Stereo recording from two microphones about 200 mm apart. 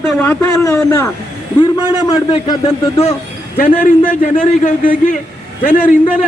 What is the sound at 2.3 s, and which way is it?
Speech, 30° left (ahead or behind).